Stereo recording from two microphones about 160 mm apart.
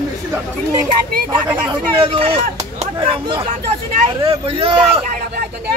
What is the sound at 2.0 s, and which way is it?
A man's voice, 35° right (ahead or behind).